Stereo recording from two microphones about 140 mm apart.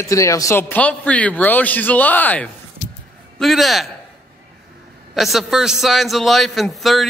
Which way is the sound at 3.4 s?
Centre (ahead or behind).